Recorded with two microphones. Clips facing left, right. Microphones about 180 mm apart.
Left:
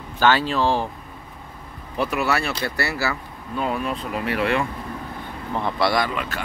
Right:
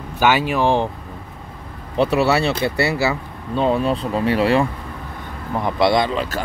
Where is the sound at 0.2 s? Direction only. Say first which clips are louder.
Right 2 dB; 15° right (ahead or behind).